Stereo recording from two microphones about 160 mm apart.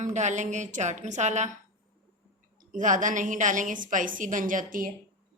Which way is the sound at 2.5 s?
55° right (ahead or behind).